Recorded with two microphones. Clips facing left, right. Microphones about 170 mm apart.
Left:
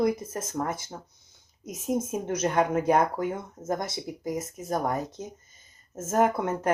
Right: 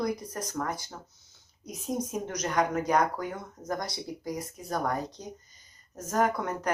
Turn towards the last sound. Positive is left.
turn(degrees=25)  # may be behind; listen again after turning